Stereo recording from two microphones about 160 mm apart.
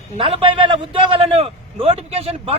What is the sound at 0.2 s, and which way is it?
A man's voice, 30° right (ahead or behind).